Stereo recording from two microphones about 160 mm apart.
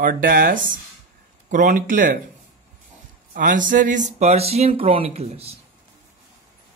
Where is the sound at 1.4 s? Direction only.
55° right (ahead or behind).